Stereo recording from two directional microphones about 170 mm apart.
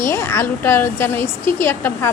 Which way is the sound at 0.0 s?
15° left (ahead or behind).